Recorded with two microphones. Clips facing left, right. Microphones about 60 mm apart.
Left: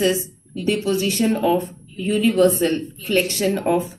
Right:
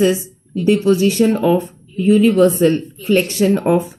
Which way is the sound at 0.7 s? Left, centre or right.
Right.